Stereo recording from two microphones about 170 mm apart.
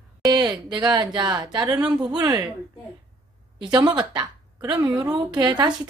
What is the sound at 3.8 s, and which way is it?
A woman's voice, 25° right (ahead or behind).